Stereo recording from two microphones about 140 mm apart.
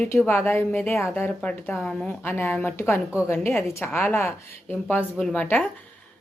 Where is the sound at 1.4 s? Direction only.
5° left (ahead or behind).